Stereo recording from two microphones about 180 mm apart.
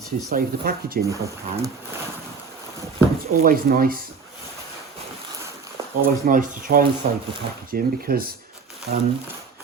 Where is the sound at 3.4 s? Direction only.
55° right (ahead or behind).